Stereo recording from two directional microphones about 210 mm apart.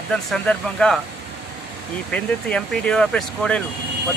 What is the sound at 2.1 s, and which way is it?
Speech, 5° left (ahead or behind).